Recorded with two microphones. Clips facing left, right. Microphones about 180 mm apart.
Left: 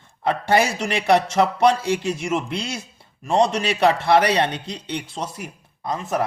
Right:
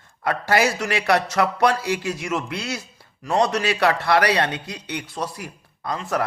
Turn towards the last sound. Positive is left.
turn(degrees=20)  # may be behind; listen again after turning